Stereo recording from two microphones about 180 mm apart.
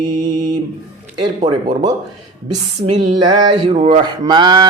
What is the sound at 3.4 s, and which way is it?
A man's voice, 25° right (ahead or behind).